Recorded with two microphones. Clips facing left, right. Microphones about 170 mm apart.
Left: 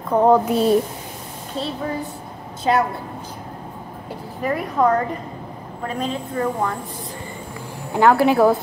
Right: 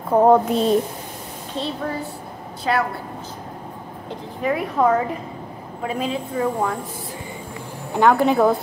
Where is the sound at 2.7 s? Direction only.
25° left (ahead or behind).